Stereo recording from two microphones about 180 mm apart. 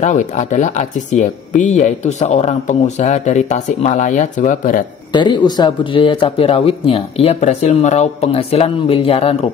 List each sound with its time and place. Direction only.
0.0 s speech: 40° left (ahead or behind)
5.1 s speech: 25° left (ahead or behind)